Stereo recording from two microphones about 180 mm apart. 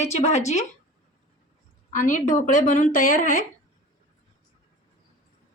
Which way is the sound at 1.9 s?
45° left (ahead or behind).